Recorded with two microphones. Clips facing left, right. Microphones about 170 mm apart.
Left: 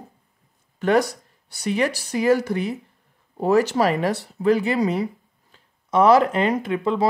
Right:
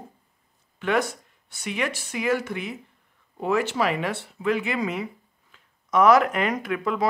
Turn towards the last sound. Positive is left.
turn(degrees=30)  # may be behind; listen again after turning